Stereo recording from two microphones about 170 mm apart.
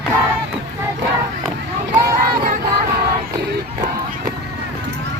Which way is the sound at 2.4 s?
55° right (ahead or behind).